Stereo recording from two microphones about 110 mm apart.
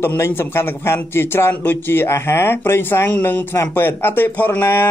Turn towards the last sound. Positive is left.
turn(degrees=20)  # may be behind; listen again after turning